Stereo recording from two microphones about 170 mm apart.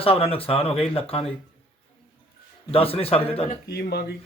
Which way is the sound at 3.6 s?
75° left (ahead or behind).